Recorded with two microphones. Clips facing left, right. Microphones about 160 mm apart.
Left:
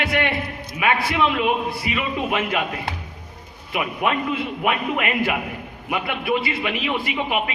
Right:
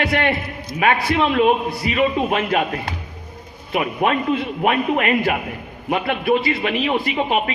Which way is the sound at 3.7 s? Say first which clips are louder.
Right 3 dB; 35° right (ahead or behind).